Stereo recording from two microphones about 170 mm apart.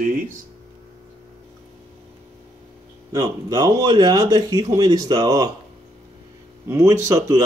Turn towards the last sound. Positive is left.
turn(degrees=-20)  # may be behind; listen again after turning